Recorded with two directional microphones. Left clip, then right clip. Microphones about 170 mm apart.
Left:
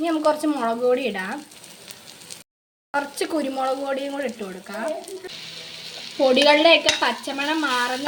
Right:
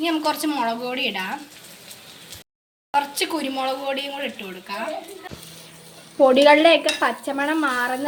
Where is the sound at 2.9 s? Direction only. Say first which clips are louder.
Right 3 dB; 50° left (ahead or behind).